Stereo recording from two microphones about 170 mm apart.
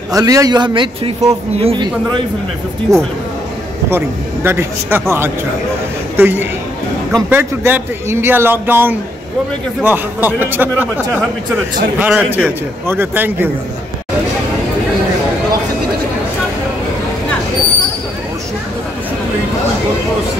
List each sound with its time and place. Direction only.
0.1 s a man's voice: 20° right (ahead or behind)
2.9 s a man's voice: 20° right (ahead or behind)
12.0 s speech: 10° right (ahead or behind)